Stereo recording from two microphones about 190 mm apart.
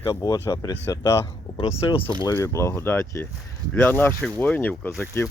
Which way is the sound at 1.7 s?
30° left (ahead or behind).